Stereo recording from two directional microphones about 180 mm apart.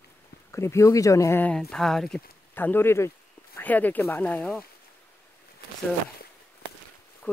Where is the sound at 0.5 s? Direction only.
15° left (ahead or behind).